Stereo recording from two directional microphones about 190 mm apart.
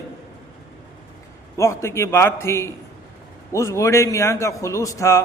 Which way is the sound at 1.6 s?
15° left (ahead or behind).